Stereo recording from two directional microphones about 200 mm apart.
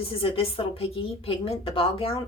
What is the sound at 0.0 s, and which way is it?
A woman's voice, 30° left (ahead or behind).